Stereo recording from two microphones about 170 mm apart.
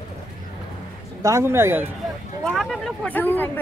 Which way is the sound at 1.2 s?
15° right (ahead or behind).